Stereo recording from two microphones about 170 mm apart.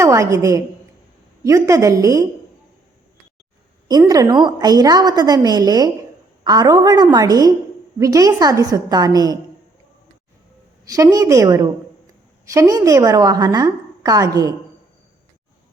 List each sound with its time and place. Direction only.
0.0 s a woman's voice: 20° right (ahead or behind)
3.8 s a woman's voice: 20° right (ahead or behind)
10.8 s a woman's voice: 20° right (ahead or behind)